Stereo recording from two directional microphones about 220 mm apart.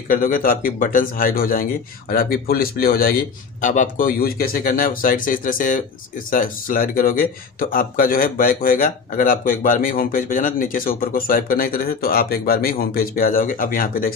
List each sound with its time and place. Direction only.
0.1 s speech: 40° left (ahead or behind)